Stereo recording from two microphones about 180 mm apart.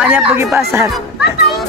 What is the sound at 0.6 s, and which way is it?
Speech, 15° right (ahead or behind).